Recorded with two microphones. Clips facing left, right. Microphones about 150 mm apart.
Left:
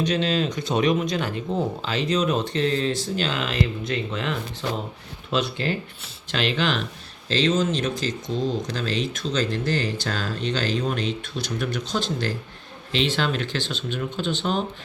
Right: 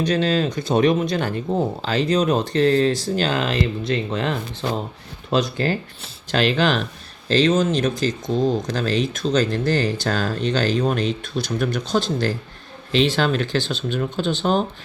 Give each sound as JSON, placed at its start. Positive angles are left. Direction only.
{"t": 0.0, "sound": "speech", "side_deg": -35}
{"t": 1.5, "sound": "speech", "side_deg": -5}
{"t": 1.8, "sound": "speech", "side_deg": -40}
{"t": 11.3, "sound": "speech", "side_deg": -40}